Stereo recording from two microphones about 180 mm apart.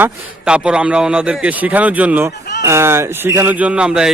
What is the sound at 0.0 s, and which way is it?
A man's voice, 5° right (ahead or behind).